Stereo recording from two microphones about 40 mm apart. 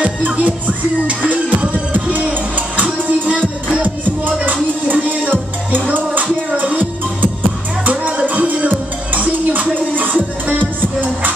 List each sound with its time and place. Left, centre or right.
0.2 s music: right
4.5 s music: right